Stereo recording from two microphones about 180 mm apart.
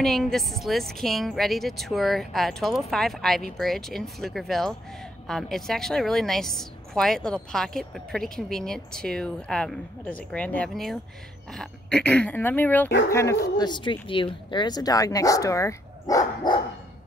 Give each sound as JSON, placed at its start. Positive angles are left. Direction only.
{"t": 0.0, "sound": "a woman's voice", "side_deg": 0}